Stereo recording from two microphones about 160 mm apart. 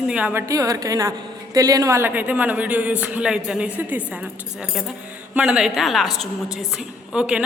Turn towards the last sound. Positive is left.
turn(degrees=-5)  # may be behind; listen again after turning